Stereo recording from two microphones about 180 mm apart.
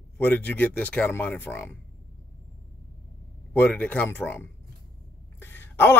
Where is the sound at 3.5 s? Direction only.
10° left (ahead or behind).